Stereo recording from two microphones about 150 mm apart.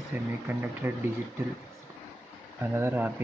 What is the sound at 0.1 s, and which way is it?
Speech, 10° right (ahead or behind).